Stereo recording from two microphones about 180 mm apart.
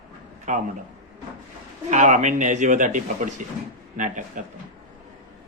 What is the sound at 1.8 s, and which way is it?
A man's voice, 40° right (ahead or behind).